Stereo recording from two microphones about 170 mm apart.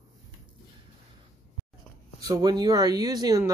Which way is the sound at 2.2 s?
20° right (ahead or behind).